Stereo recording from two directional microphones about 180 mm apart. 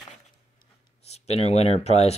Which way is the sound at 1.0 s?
35° left (ahead or behind).